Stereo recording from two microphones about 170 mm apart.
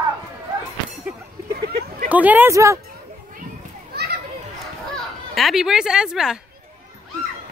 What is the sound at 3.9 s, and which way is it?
Children playing, 70° right (ahead or behind).